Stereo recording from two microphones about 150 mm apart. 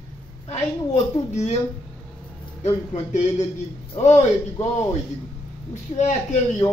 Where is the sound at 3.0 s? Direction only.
50° left (ahead or behind).